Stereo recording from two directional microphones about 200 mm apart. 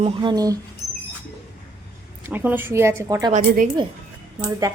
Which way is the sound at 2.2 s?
10° right (ahead or behind).